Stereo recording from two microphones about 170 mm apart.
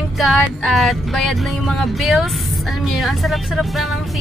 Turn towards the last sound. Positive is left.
turn(degrees=0)  # may be behind; listen again after turning